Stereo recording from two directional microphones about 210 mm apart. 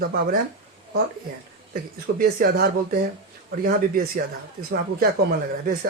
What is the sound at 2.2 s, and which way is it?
Speech, 40° right (ahead or behind).